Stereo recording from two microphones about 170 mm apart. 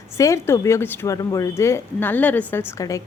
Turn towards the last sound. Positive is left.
turn(degrees=20)  # may be behind; listen again after turning